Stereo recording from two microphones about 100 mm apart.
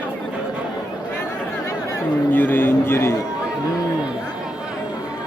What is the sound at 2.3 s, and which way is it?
Speech, 20° left (ahead or behind).